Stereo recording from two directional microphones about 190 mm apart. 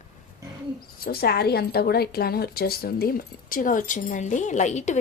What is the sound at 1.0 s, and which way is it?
A woman's voice, 55° left (ahead or behind).